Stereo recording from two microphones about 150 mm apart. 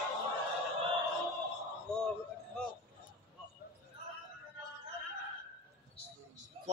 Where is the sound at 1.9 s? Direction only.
5° left (ahead or behind).